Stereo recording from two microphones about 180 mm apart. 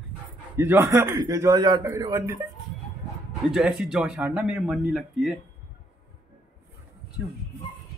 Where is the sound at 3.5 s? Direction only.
5° right (ahead or behind).